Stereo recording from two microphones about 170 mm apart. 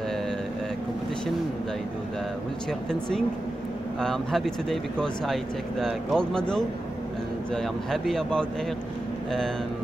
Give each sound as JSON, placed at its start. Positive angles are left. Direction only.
{"t": 2.9, "sound": "speech", "side_deg": 5}